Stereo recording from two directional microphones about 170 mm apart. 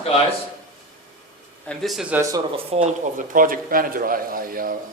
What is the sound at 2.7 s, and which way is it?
Speech, 45° right (ahead or behind).